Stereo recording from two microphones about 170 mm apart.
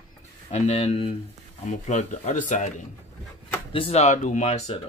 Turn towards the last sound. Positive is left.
turn(degrees=40)  # may be behind; listen again after turning